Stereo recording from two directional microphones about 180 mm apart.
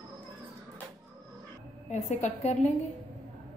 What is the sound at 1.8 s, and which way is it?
Speech, 40° left (ahead or behind).